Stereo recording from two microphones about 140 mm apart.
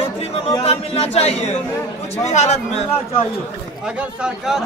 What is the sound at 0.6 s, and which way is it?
Speech, 45° left (ahead or behind).